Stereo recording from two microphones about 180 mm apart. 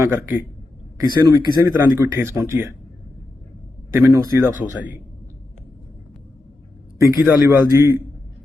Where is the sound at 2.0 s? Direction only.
15° right (ahead or behind).